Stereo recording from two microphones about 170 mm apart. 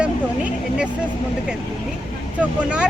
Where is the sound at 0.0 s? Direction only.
5° right (ahead or behind).